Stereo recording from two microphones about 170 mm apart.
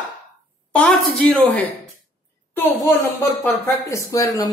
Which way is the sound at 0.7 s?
5° left (ahead or behind).